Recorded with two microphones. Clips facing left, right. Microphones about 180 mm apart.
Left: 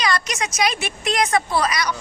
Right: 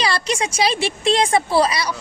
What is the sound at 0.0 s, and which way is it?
A woman's voice, 30° right (ahead or behind).